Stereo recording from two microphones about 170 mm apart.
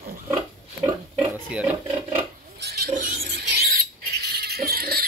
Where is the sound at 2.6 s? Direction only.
65° right (ahead or behind).